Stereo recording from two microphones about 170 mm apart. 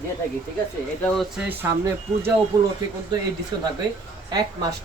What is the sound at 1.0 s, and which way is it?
Speech, centre (ahead or behind).